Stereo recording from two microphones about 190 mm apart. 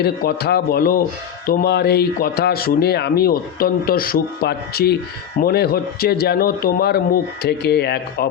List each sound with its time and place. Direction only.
0.0 s speech: 55° left (ahead or behind)